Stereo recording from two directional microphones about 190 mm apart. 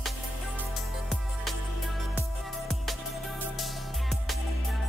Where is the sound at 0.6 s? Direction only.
Centre (ahead or behind).